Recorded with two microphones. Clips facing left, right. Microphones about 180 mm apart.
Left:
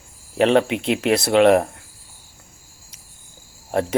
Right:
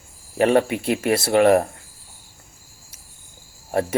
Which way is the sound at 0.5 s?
70° left (ahead or behind).